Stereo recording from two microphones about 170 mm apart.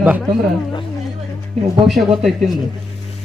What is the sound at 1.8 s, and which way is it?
Speech, centre (ahead or behind).